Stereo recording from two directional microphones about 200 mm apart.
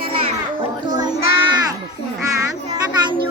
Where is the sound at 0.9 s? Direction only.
20° right (ahead or behind).